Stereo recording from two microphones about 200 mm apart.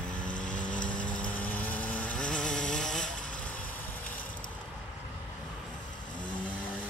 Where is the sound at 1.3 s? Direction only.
10° left (ahead or behind).